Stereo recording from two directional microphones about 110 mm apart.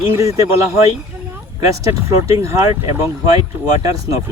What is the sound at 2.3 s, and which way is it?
Speech, 25° right (ahead or behind).